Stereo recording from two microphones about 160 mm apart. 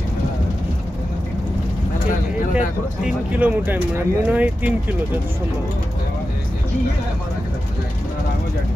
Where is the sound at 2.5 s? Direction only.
5° right (ahead or behind).